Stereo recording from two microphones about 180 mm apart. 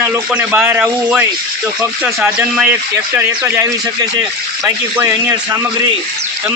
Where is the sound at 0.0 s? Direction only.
10° right (ahead or behind).